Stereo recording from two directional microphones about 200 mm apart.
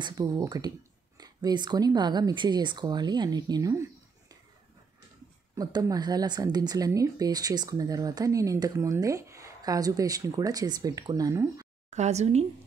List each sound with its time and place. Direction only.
0.0 s speech: 20° right (ahead or behind)
5.5 s speech: 20° right (ahead or behind)
11.9 s speech: 35° right (ahead or behind)